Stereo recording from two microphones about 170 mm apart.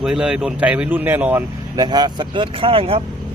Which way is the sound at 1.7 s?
25° right (ahead or behind).